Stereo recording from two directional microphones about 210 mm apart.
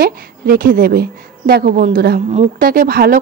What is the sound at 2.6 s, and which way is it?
Speech, 45° right (ahead or behind).